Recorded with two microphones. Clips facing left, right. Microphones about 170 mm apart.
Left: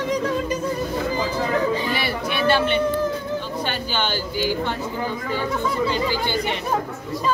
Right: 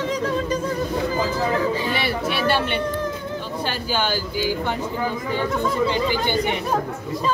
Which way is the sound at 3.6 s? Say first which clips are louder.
Right 1 dB; 5° right (ahead or behind).